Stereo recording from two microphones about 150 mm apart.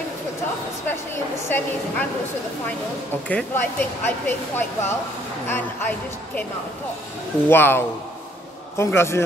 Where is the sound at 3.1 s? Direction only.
10° left (ahead or behind).